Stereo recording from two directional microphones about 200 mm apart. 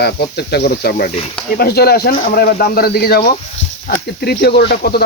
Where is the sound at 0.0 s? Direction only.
55° left (ahead or behind).